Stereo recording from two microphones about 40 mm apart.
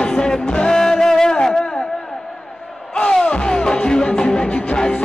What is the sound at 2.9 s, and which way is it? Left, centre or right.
Music, centre.